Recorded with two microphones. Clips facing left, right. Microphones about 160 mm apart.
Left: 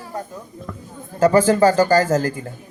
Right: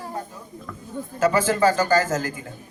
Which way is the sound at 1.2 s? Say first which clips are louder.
Left 6 dB; 35° left (ahead or behind).